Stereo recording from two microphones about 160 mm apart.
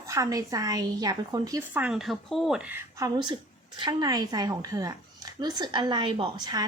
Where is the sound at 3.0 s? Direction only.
30° right (ahead or behind).